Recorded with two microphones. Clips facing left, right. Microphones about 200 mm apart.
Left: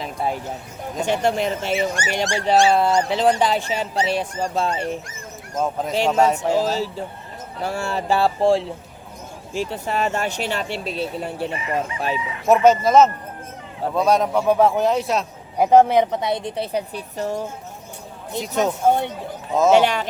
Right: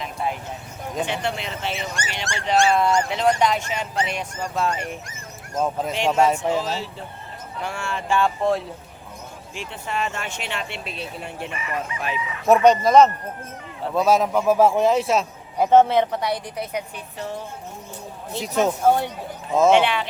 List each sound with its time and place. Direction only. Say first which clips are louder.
0.0 s a sound: left 2 dB; 35° left (ahead or behind)
0.9 s speech: left 6 dB; 40° left (ahead or behind)
5.5 s a man's voice: left 2 dB; centre (ahead or behind)
6.5 s speech: left 4 dB; 40° left (ahead or behind)
12.5 s a man's voice: even; 5° left (ahead or behind)
15.5 s a woman's voice: left 2 dB; 15° left (ahead or behind); by 17.5 s 40° left (ahead or behind)
18.3 s a man's voice: even; centre (ahead or behind)
19.7 s speech: left 2 dB; 40° left (ahead or behind)